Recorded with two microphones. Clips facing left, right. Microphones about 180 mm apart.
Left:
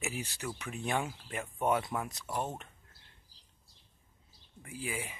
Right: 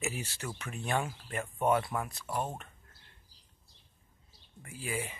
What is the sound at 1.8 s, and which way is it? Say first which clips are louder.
Speech: right 1 dB; centre (ahead or behind).